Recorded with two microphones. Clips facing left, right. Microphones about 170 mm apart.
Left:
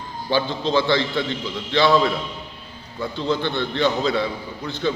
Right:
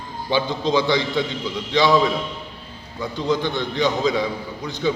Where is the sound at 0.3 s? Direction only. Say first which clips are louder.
Right 1 dB; 15° right (ahead or behind).